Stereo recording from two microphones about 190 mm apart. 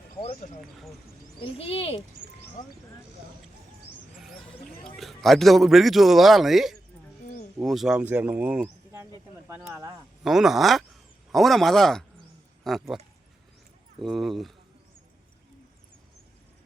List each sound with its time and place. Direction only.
0.2 s speech: 35° left (ahead or behind)
4.8 s a man's voice: centre (ahead or behind)
10.2 s a man's voice: centre (ahead or behind)
14.0 s a man's voice: centre (ahead or behind)